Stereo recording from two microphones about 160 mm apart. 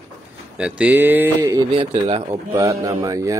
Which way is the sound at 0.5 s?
5° right (ahead or behind).